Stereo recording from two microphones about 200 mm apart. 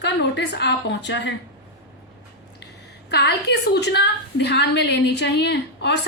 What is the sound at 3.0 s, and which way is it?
A woman's voice, 55° left (ahead or behind).